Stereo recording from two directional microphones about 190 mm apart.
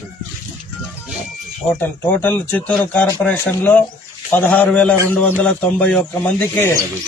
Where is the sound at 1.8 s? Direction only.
10° left (ahead or behind).